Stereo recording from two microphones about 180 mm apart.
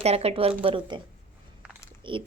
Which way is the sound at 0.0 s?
35° right (ahead or behind).